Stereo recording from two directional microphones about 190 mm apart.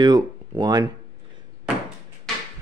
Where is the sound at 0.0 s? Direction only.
20° right (ahead or behind).